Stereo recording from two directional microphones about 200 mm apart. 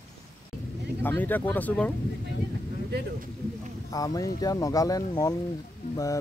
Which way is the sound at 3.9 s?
15° left (ahead or behind).